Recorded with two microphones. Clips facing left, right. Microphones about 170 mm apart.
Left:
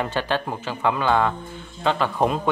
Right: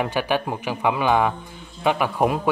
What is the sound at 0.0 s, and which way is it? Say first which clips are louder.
Speech: right 2 dB; 10° right (ahead or behind).